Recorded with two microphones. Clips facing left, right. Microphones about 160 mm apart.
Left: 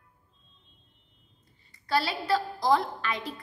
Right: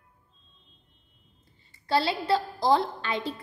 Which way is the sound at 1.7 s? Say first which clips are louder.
Right 3 dB; 25° right (ahead or behind).